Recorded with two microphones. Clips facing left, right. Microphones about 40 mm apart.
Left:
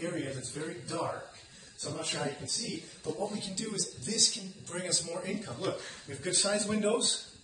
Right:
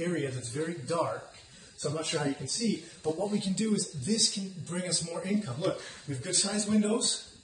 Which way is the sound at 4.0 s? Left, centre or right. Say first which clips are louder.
Right 4 dB; centre.